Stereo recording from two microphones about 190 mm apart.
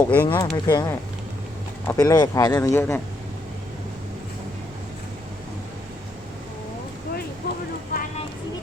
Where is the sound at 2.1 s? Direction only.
20° left (ahead or behind).